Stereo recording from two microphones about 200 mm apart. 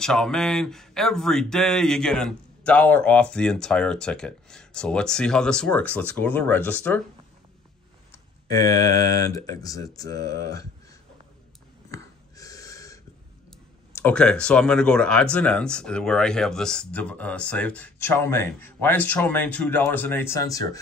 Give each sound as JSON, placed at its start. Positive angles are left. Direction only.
{"t": 0.0, "sound": "speech", "side_deg": 5}
{"t": 9.3, "sound": "speech", "side_deg": 15}
{"t": 11.9, "sound": "a sound", "side_deg": 15}
{"t": 13.9, "sound": "speech", "side_deg": 5}